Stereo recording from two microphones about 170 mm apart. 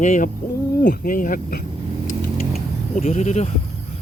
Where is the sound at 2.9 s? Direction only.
40° left (ahead or behind).